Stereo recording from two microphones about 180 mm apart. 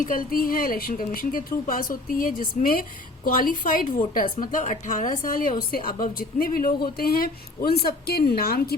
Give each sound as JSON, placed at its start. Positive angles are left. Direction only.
{"t": 0.0, "sound": "a woman's voice", "side_deg": 50}